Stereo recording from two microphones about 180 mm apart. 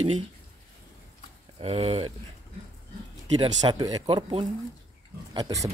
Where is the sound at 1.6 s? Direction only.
30° right (ahead or behind).